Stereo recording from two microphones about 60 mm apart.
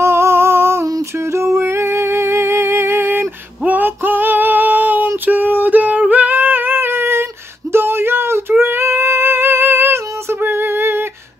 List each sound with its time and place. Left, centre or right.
0.0 s humming: right
1.3 s music: right
3.6 s music: right
7.7 s a sound: right
10.4 s music: right